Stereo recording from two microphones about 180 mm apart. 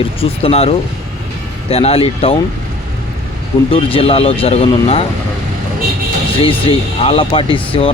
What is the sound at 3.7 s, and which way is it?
Speech, 30° left (ahead or behind).